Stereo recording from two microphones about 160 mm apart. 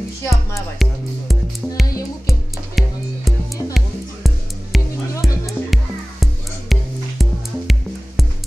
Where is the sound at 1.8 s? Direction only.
20° left (ahead or behind).